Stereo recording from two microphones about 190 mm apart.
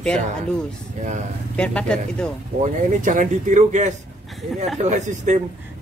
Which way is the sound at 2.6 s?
40° right (ahead or behind).